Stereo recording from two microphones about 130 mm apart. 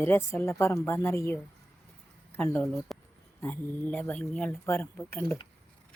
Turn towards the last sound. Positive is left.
turn(degrees=15)  # may be behind; listen again after turning